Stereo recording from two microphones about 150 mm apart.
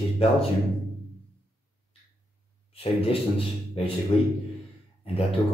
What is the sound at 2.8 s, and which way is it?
A man's voice, 40° left (ahead or behind).